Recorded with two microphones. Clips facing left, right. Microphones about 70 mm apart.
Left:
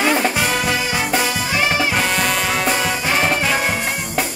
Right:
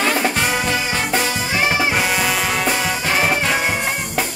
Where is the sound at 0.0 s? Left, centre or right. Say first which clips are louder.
Left 1 dB; centre.